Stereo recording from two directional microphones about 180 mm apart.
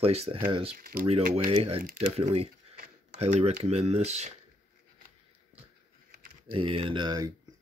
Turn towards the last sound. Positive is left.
turn(degrees=-25)  # may be behind; listen again after turning